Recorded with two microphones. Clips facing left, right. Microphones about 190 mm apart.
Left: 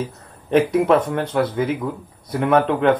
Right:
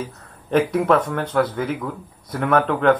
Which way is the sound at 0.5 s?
20° left (ahead or behind).